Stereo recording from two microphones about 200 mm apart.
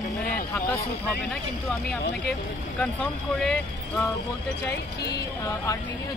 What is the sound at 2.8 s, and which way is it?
Speech, 5° left (ahead or behind).